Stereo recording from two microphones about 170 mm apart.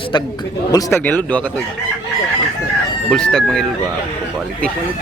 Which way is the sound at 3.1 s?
5° left (ahead or behind).